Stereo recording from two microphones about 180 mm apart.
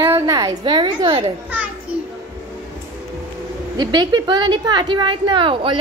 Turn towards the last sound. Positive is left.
turn(degrees=-30)  # may be behind; listen again after turning